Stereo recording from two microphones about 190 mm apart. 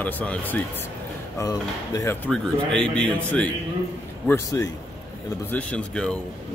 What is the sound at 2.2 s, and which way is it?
Speech, 5° left (ahead or behind).